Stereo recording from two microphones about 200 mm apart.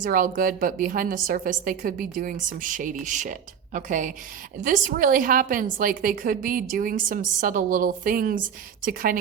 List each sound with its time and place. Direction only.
0.0 s a woman's voice: 45° right (ahead or behind)